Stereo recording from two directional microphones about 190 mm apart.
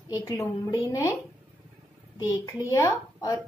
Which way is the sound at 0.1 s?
15° left (ahead or behind).